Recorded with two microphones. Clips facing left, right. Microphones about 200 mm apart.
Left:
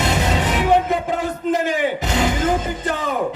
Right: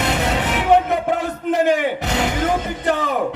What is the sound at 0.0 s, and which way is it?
Music, 60° right (ahead or behind).